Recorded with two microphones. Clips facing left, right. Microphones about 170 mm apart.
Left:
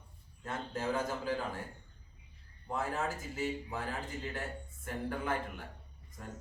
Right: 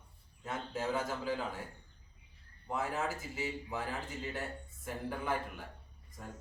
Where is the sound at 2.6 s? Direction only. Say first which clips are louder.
Even; 5° right (ahead or behind).